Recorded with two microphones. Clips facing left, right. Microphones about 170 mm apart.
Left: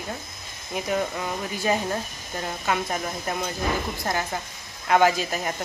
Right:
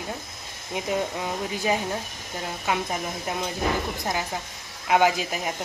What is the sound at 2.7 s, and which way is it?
Speech, 10° right (ahead or behind).